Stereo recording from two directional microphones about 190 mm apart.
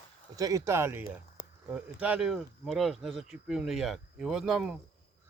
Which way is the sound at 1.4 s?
25° left (ahead or behind).